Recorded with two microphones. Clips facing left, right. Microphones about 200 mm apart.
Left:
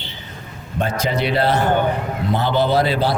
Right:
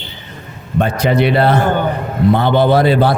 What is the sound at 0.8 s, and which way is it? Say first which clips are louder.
A man's voice: right 7 dB; 60° right (ahead or behind).